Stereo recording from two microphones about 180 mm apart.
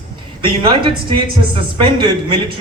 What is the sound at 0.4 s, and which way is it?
Speech, 25° right (ahead or behind).